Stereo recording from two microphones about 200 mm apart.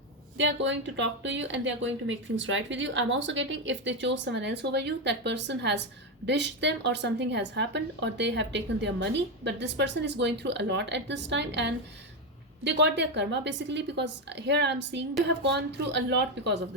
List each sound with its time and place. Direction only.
0.3 s a woman's voice: 65° right (ahead or behind)